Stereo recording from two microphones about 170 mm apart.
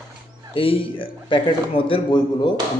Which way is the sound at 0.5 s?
30° left (ahead or behind).